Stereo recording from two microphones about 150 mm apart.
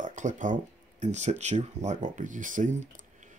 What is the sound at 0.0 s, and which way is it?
Speech, 55° right (ahead or behind).